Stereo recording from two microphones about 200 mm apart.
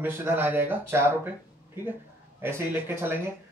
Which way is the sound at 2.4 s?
10° right (ahead or behind).